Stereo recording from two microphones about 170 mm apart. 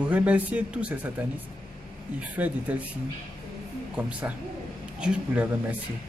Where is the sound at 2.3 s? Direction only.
10° right (ahead or behind).